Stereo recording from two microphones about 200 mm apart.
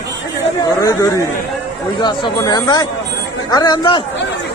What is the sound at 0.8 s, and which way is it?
Speech, 15° left (ahead or behind).